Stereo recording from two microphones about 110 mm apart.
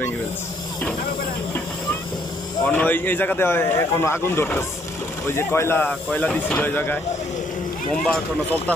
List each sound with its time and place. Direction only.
2.6 s speech: 15° left (ahead or behind)